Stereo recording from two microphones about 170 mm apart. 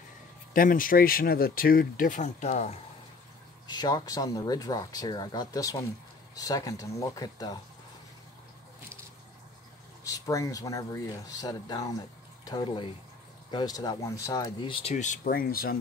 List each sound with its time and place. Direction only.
0.5 s speech: 55° left (ahead or behind)
3.6 s speech: 25° left (ahead or behind)
10.0 s speech: 20° left (ahead or behind); by 15.1 s 40° left (ahead or behind)
15.2 s speech: 60° left (ahead or behind)